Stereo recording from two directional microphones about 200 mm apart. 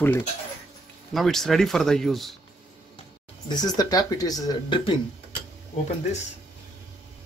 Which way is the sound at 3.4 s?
20° left (ahead or behind).